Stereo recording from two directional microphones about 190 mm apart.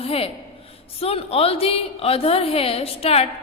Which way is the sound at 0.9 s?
30° left (ahead or behind).